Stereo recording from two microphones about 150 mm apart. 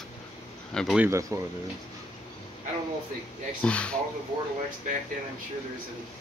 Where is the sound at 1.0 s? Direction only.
20° right (ahead or behind).